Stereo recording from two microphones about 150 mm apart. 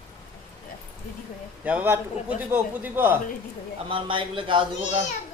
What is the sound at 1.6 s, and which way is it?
A man's voice, 10° right (ahead or behind).